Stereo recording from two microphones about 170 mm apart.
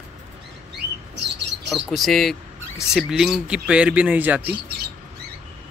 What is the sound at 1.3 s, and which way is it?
Bird, 90° right.